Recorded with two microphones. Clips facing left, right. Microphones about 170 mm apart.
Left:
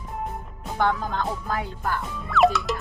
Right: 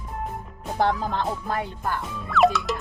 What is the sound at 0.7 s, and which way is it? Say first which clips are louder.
Speech: right 1 dB; 35° right (ahead or behind).